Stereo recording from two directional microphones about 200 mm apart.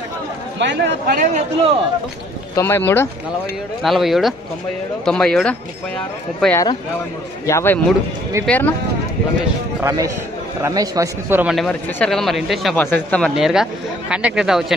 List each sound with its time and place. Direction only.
0.6 s speech: 60° right (ahead or behind)
2.5 s speech: 10° left (ahead or behind)
3.8 s speech: centre (ahead or behind)
9.8 s a man's voice: 15° right (ahead or behind)
11.5 s speech: 5° left (ahead or behind)